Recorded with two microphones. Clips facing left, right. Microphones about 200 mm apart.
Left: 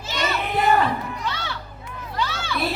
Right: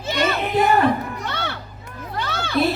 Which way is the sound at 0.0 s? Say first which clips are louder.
Right 5 dB; 55° right (ahead or behind).